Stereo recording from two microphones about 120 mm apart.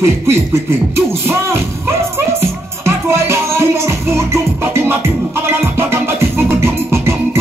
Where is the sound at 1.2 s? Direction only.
20° right (ahead or behind).